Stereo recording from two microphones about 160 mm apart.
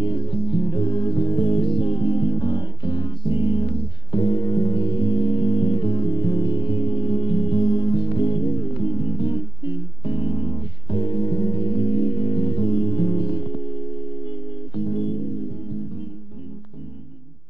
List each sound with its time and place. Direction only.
0.0 s music: 35° left (ahead or behind)
4.1 s gong: 30° left (ahead or behind)
14.2 s music: 30° left (ahead or behind)